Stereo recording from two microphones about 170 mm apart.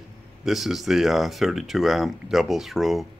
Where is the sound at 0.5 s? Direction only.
Centre (ahead or behind).